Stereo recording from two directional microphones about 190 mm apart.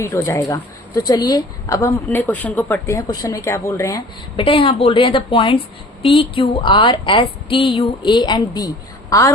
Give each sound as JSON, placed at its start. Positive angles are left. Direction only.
{"t": 0.0, "sound": "a woman's voice", "side_deg": 15}
{"t": 4.4, "sound": "a woman's voice", "side_deg": 25}